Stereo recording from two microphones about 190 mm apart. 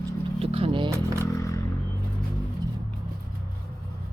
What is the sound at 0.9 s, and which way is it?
Vehicle, 15° right (ahead or behind).